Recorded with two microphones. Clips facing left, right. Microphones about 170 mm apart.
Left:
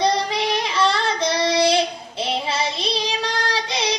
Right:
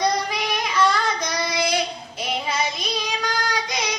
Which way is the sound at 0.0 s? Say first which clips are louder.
Left 3 dB; 30° left (ahead or behind).